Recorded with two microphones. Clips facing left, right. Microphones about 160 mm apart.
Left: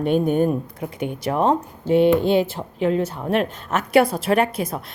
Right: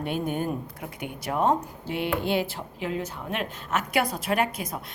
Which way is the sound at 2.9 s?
30° left (ahead or behind).